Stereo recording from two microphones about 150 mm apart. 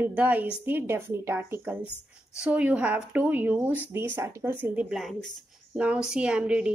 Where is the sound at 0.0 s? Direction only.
10° right (ahead or behind).